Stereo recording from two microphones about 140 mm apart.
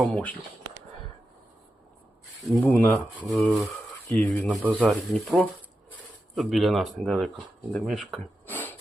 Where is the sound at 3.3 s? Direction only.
Centre (ahead or behind).